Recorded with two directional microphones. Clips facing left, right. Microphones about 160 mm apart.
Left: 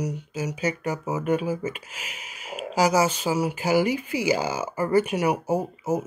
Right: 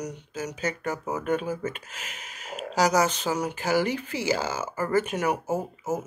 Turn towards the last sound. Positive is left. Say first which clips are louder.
# left 4 dB
turn(degrees=10)  # may be behind; listen again after turning